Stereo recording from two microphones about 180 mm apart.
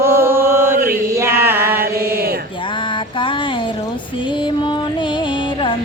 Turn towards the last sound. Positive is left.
turn(degrees=25)  # may be behind; listen again after turning